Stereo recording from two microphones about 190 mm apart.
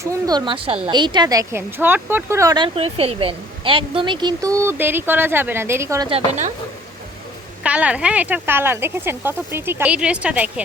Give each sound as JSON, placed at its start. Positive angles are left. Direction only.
{"t": 0.0, "sound": "speech", "side_deg": -20}
{"t": 2.7, "sound": "speech", "side_deg": -30}
{"t": 6.1, "sound": "speech", "side_deg": -35}
{"t": 7.6, "sound": "speech", "side_deg": -5}